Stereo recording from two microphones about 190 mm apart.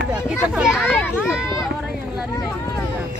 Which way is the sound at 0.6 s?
5° right (ahead or behind).